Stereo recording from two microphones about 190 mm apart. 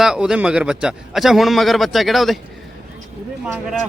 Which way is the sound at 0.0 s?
5° right (ahead or behind).